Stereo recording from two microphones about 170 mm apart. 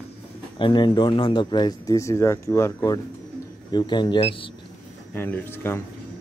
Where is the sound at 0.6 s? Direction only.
30° left (ahead or behind).